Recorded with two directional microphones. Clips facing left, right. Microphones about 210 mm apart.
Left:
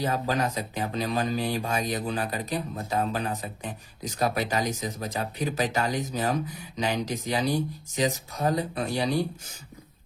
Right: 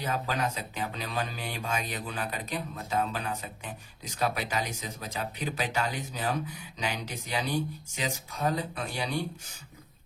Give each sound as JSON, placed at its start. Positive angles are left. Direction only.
{"t": 0.0, "sound": "speech", "side_deg": 35}